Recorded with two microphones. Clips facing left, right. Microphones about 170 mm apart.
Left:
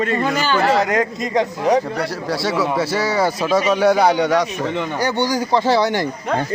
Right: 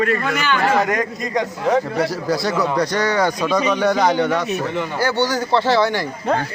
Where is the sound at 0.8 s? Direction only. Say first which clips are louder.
Left 1 dB; 20° left (ahead or behind).